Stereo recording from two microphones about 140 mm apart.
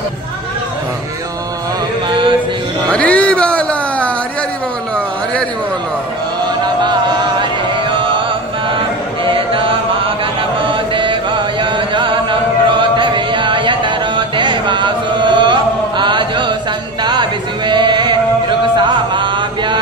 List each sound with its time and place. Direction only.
2.0 s music: 35° right (ahead or behind)
2.9 s music: 10° left (ahead or behind)
6.6 s chant: 30° right (ahead or behind)
17.0 s music: 30° right (ahead or behind)
18.8 s chant: 35° right (ahead or behind)